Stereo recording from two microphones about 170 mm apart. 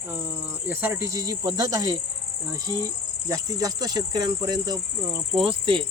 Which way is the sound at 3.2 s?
20° right (ahead or behind).